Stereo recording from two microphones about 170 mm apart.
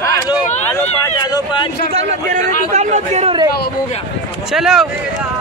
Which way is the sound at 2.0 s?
45° right (ahead or behind).